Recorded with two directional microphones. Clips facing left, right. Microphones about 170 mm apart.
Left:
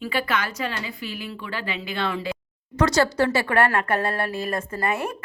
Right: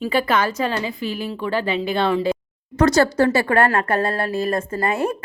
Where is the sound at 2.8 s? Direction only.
50° right (ahead or behind).